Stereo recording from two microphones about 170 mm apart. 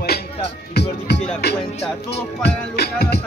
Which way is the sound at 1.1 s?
80° left.